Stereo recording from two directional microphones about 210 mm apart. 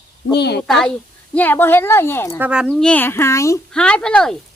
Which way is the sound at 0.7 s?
5° left (ahead or behind).